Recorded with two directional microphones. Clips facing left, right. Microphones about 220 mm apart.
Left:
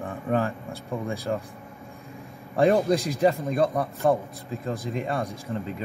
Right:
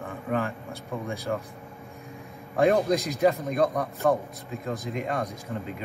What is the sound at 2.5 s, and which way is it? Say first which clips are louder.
A man's voice: left 1 dB; 30° left (ahead or behind).